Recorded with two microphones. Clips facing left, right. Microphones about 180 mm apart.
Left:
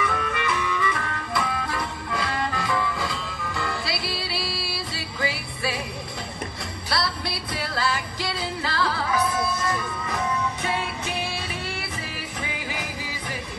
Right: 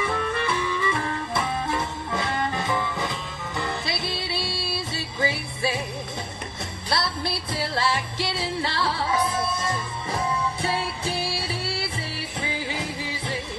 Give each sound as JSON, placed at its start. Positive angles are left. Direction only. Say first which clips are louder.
{"t": 0.0, "sound": "music", "louder": "right 1 dB", "side_deg": -30}
{"t": 6.9, "sound": "music", "louder": "right 1 dB", "side_deg": -25}